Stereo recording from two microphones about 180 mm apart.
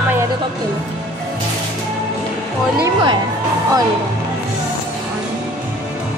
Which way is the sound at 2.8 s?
25° right (ahead or behind).